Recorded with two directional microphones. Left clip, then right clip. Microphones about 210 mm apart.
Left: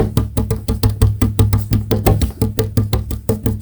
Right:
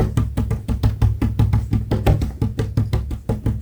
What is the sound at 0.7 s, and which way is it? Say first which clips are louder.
Music: left 6 dB; 45° left (ahead or behind).